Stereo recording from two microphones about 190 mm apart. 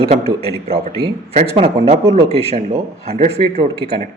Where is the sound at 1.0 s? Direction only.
30° right (ahead or behind).